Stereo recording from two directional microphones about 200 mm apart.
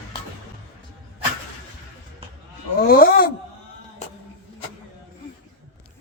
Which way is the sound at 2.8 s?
50° left (ahead or behind).